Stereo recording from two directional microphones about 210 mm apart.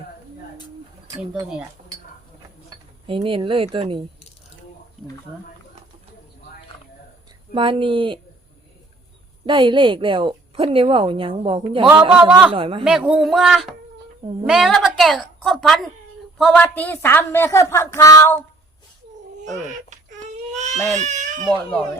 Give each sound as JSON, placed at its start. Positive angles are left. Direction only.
{"t": 3.1, "sound": "a woman's voice", "side_deg": -25}
{"t": 7.5, "sound": "a woman's voice", "side_deg": -25}
{"t": 9.5, "sound": "a woman's voice", "side_deg": -20}
{"t": 12.1, "sound": "a man's voice", "side_deg": -5}
{"t": 12.5, "sound": "a woman's voice", "side_deg": -25}
{"t": 12.8, "sound": "a woman's voice", "side_deg": -5}
{"t": 19.9, "sound": "baby cry", "side_deg": -35}
{"t": 21.4, "sound": "a woman's voice", "side_deg": 5}